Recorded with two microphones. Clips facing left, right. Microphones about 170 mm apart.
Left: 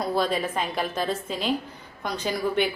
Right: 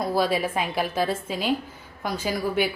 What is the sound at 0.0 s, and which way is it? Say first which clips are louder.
A woman's voice: right 2 dB; 5° right (ahead or behind).